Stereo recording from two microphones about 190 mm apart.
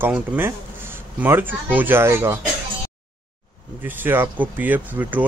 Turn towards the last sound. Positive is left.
turn(degrees=-10)  # may be behind; listen again after turning